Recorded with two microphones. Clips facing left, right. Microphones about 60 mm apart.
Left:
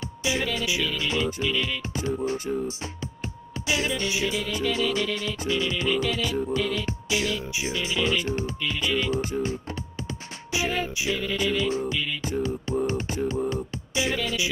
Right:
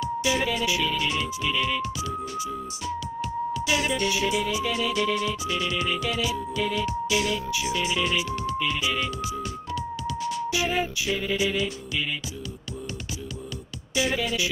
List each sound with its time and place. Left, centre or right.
3.8 s music: right
7.7 s music: right
11.1 s music: centre